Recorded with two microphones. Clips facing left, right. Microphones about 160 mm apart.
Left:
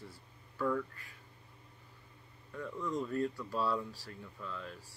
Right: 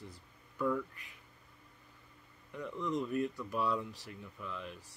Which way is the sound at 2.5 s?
20° right (ahead or behind).